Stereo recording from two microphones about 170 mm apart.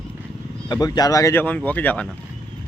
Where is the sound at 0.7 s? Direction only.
25° left (ahead or behind).